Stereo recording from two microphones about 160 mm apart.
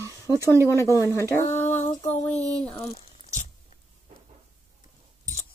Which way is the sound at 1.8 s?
45° left (ahead or behind).